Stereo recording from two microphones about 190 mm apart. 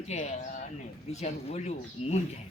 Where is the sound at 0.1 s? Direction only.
35° left (ahead or behind).